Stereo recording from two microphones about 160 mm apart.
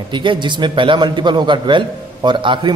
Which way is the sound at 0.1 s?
30° right (ahead or behind).